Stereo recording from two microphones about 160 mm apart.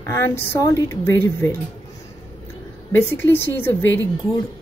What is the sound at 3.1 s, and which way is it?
Speech, 15° left (ahead or behind).